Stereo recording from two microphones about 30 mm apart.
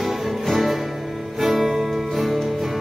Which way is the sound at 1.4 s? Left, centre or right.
Centre.